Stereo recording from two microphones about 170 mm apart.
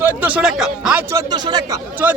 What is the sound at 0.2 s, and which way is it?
Speech, 10° right (ahead or behind).